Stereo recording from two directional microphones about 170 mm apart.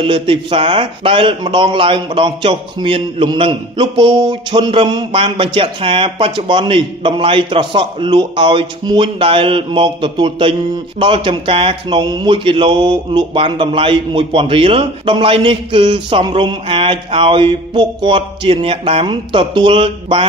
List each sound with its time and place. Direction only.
0.0 s a man's voice: 30° right (ahead or behind)